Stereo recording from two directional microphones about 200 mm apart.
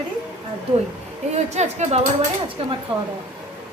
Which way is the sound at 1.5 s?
35° right (ahead or behind).